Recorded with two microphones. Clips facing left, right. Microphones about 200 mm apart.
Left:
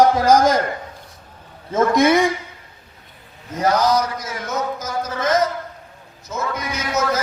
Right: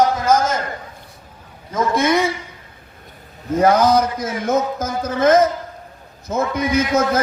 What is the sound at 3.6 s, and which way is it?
A man's voice, 55° right (ahead or behind).